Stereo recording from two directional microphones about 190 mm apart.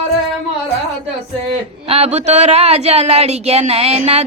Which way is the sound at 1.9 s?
35° right (ahead or behind).